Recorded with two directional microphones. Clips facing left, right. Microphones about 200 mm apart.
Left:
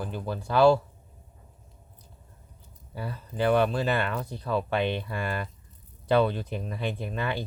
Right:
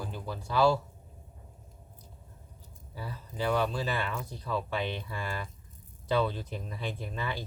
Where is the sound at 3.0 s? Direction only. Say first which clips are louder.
Left 6 dB; 60° left (ahead or behind).